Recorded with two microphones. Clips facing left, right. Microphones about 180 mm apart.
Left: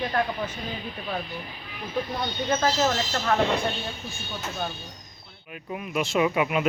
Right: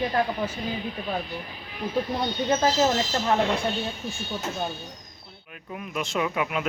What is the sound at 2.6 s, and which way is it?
Speech, 20° right (ahead or behind).